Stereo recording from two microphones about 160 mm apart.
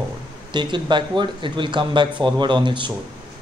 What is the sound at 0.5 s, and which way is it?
Speech, 30° right (ahead or behind).